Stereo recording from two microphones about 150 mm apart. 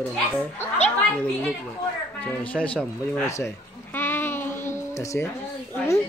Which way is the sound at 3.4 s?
15° left (ahead or behind).